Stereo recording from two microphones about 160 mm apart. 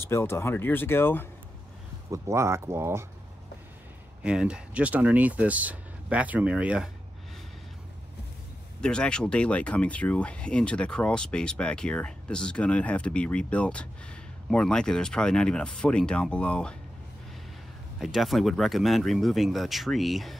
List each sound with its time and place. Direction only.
0.0 s speech: 15° left (ahead or behind)
2.0 s speech: 20° right (ahead or behind)
4.2 s speech: 5° right (ahead or behind)
8.8 s speech: 5° left (ahead or behind)
17.9 s speech: centre (ahead or behind)